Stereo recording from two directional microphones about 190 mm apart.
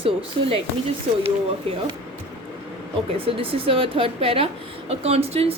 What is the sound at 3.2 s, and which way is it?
A woman's voice, 30° right (ahead or behind).